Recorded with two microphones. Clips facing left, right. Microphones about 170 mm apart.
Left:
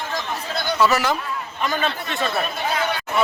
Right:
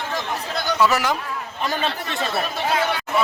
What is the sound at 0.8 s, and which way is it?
Speech, 15° right (ahead or behind).